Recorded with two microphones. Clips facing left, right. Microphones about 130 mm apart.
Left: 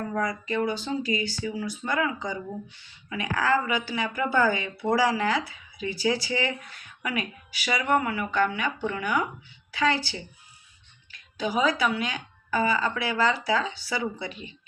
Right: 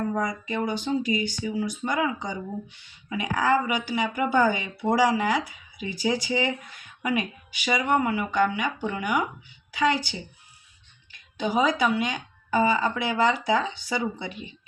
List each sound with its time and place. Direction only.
0.1 s a woman's voice: 20° right (ahead or behind)